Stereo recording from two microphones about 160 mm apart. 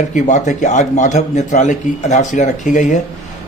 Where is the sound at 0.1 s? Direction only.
50° left (ahead or behind).